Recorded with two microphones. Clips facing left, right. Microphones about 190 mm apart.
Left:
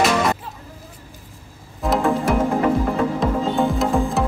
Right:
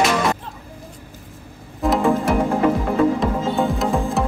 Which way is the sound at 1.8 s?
Centre (ahead or behind).